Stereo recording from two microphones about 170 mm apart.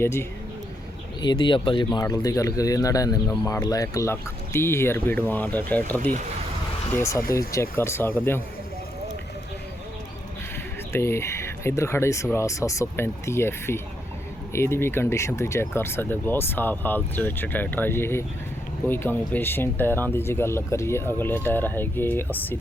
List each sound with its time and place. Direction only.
0.0 s speech: 15° left (ahead or behind)
1.2 s a man's voice: 25° left (ahead or behind); by 8.4 s 10° left (ahead or behind)
10.9 s speech: 15° left (ahead or behind)